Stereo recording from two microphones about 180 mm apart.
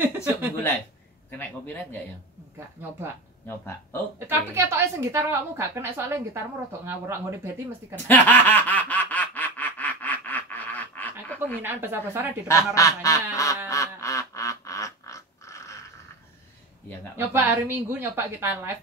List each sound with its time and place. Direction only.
1.4 s speech: 10° left (ahead or behind)
3.4 s speech: 10° left (ahead or behind)
4.2 s a woman's voice: 15° right (ahead or behind)
8.1 s snicker: 10° left (ahead or behind)
11.6 s a woman's voice: 10° right (ahead or behind)
12.4 s speech: 15° left (ahead or behind)
13.7 s duck: 20° left (ahead or behind)
17.2 s a woman's voice: 10° right (ahead or behind)